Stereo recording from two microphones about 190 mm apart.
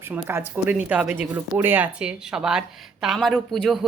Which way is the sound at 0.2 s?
10° right (ahead or behind).